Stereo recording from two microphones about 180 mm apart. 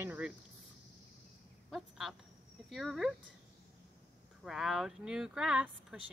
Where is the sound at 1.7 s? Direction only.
Centre (ahead or behind).